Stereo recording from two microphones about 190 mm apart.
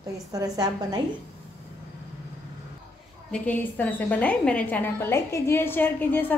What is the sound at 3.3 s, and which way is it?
A woman's voice, 5° left (ahead or behind).